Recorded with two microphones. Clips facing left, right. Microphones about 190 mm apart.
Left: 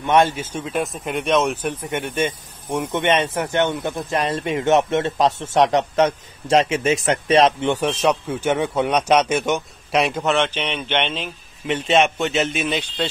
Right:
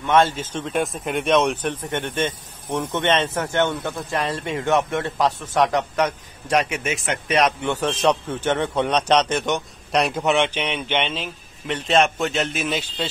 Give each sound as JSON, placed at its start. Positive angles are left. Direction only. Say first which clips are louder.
{"t": 0.0, "sound": "speech", "louder": "left 1 dB", "side_deg": 15}
{"t": 7.7, "sound": "speech", "louder": "left 1 dB", "side_deg": 10}
{"t": 10.2, "sound": "a man's voice", "louder": "even", "side_deg": -10}